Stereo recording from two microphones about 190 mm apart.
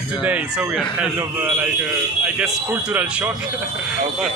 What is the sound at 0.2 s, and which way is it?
A man's voice, 5° right (ahead or behind).